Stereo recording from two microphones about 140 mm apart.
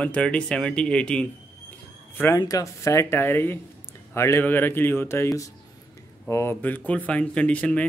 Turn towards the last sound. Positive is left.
turn(degrees=10)  # may be behind; listen again after turning